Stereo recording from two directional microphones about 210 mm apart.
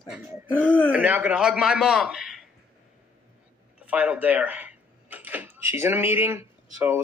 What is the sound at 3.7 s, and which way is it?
A man's voice, 5° right (ahead or behind).